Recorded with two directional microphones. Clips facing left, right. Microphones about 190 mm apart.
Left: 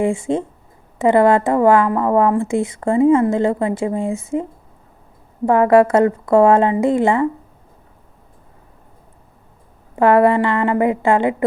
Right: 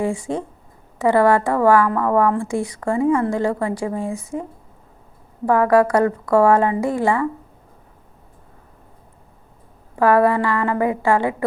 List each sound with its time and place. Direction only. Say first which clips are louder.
0.0 s speech: left 4 dB; 25° left (ahead or behind)
5.5 s speech: left 3 dB; 25° left (ahead or behind)
9.9 s speech: left 3 dB; 25° left (ahead or behind)